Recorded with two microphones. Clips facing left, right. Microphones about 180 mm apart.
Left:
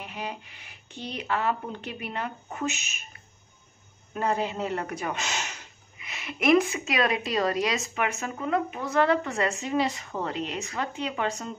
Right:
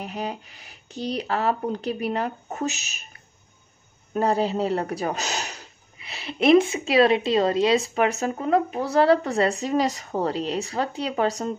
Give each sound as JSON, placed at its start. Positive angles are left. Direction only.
{"t": 0.0, "sound": "speech", "side_deg": -40}
{"t": 4.1, "sound": "speech", "side_deg": -35}